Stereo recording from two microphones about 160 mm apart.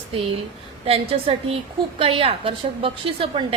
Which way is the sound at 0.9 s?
40° right (ahead or behind).